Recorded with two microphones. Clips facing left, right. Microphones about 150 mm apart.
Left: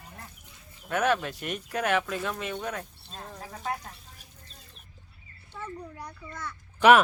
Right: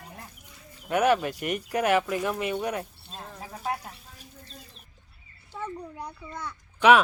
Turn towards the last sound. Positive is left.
turn(degrees=0)  # may be behind; listen again after turning